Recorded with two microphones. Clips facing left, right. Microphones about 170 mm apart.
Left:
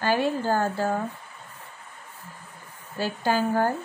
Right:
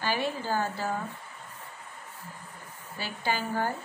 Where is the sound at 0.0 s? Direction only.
50° left (ahead or behind).